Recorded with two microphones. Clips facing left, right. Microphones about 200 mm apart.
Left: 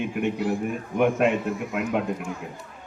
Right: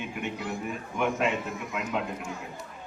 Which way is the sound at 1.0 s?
55° left (ahead or behind).